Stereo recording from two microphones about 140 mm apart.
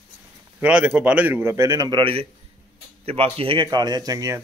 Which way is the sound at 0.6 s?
10° right (ahead or behind).